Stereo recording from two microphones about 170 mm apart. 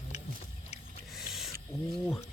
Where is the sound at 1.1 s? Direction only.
Centre (ahead or behind).